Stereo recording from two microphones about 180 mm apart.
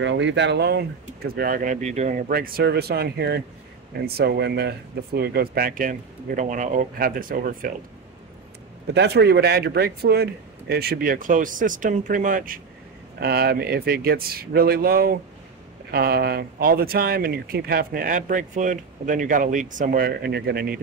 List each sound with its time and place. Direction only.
0.0 s speech: 90° right; by 7.7 s 50° right (ahead or behind)
8.9 s speech: 70° right (ahead or behind); by 12.5 s 45° right (ahead or behind)
13.2 s speech: 60° right (ahead or behind)